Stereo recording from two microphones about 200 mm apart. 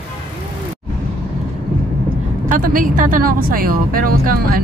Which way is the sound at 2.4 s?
45° right (ahead or behind).